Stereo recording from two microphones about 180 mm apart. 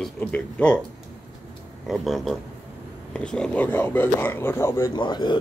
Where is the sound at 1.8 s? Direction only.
Centre (ahead or behind).